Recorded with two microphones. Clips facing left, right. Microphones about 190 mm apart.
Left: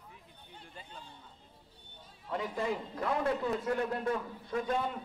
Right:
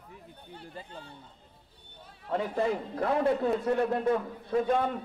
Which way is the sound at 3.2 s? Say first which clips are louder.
Right 6 dB; 30° right (ahead or behind).